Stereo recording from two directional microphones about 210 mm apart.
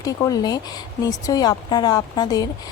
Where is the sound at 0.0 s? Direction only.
15° left (ahead or behind).